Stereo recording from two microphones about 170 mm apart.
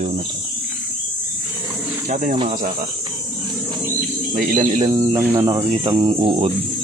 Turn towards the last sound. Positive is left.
turn(degrees=-35)  # may be behind; listen again after turning